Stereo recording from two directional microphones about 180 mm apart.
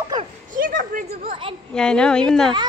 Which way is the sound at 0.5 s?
50° right (ahead or behind).